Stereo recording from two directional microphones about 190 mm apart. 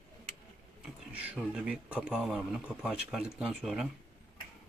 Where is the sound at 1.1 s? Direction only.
5° right (ahead or behind).